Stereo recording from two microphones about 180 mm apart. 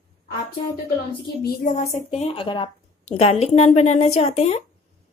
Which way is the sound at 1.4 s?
55° left (ahead or behind).